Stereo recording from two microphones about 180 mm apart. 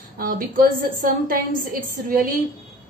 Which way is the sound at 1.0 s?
50° right (ahead or behind).